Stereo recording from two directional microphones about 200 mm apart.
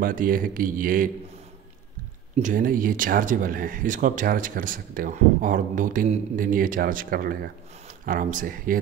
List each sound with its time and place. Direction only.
0.0 s speech: 45° right (ahead or behind)
2.3 s speech: 40° right (ahead or behind)